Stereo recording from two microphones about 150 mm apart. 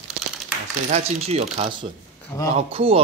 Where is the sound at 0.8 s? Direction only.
50° right (ahead or behind).